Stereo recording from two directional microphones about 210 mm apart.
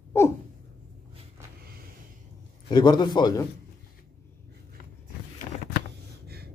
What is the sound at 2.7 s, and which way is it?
Speech, 20° left (ahead or behind).